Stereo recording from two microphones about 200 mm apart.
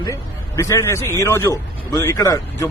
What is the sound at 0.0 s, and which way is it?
Speech, 15° left (ahead or behind).